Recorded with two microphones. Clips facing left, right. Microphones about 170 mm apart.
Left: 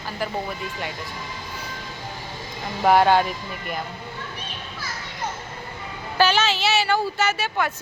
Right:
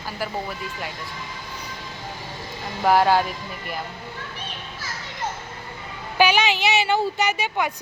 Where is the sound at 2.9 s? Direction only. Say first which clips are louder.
Left 1 dB; centre (ahead or behind).